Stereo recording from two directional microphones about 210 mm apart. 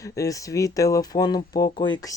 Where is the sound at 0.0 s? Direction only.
15° left (ahead or behind).